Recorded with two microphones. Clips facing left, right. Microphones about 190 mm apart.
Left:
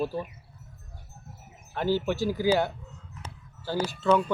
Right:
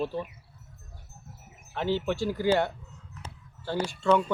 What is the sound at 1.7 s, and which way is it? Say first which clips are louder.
Speech: left 2 dB; 5° left (ahead or behind).